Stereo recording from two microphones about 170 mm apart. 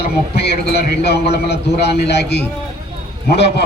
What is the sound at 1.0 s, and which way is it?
A man's voice, 75° left (ahead or behind).